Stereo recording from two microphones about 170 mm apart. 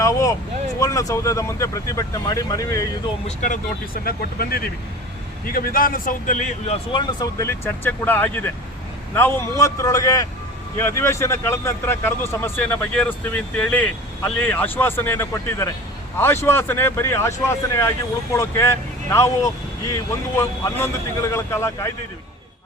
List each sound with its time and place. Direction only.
0.0 s speech: 20° left (ahead or behind)
3.2 s a man's voice: 45° left (ahead or behind)
4.0 s a man's voice: 60° left (ahead or behind); by 6.7 s 45° left (ahead or behind)
6.9 s speech: 20° left (ahead or behind)